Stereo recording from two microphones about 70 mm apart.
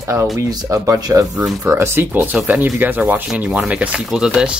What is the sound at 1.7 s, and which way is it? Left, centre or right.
Speech, right.